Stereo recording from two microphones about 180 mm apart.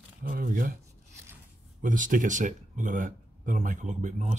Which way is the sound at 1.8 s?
50° right (ahead or behind).